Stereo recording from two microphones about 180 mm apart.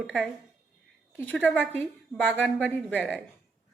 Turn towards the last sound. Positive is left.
turn(degrees=5)  # may be behind; listen again after turning